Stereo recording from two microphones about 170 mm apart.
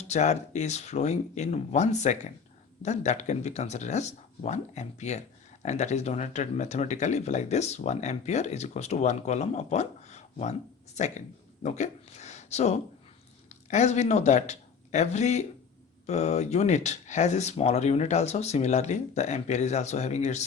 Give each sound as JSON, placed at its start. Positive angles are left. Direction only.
{"t": 0.1, "sound": "speech", "side_deg": 45}